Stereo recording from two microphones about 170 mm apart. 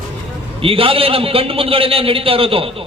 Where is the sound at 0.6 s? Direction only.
30° right (ahead or behind).